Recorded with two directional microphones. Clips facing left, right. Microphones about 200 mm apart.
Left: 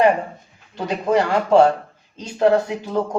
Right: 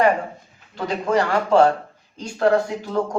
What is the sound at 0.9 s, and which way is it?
Speech, 20° left (ahead or behind).